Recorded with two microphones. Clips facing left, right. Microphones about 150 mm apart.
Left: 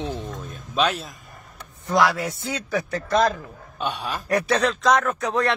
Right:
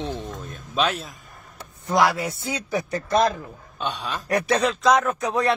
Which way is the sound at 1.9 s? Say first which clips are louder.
Even; 15° right (ahead or behind).